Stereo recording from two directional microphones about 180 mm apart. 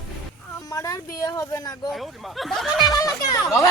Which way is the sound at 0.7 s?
20° left (ahead or behind).